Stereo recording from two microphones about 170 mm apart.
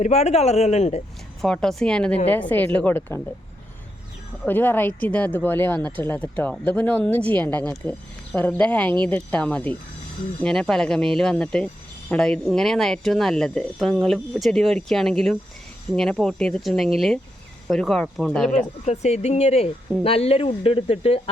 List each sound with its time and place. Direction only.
0.0 s speech: 40° left (ahead or behind)
1.4 s speech: 5° left (ahead or behind)
4.4 s speech: 10° left (ahead or behind)
18.9 s speech: 40° left (ahead or behind)